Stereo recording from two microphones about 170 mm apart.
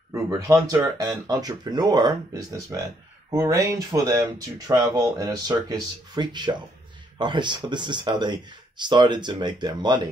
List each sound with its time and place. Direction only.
0.1 s speech: 20° right (ahead or behind)